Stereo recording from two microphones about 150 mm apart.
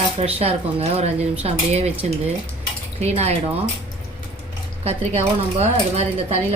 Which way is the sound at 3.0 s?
45° right (ahead or behind).